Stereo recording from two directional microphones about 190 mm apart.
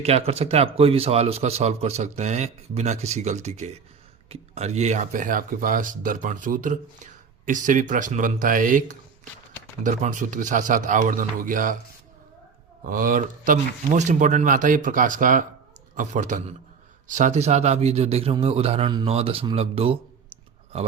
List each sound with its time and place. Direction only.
0.0 s speech: 35° right (ahead or behind)
12.8 s speech: 45° right (ahead or behind); by 20.0 s 30° right (ahead or behind)